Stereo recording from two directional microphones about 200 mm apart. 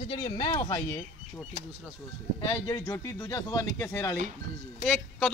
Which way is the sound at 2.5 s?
20° left (ahead or behind).